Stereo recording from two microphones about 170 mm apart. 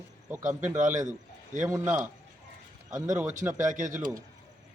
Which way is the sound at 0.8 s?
45° right (ahead or behind).